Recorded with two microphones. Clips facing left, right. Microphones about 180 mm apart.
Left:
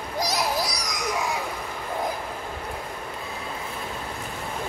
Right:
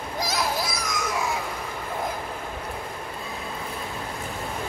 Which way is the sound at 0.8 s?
15° left (ahead or behind).